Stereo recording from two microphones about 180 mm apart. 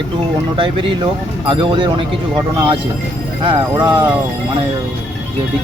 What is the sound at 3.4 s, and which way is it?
Speech, 25° right (ahead or behind).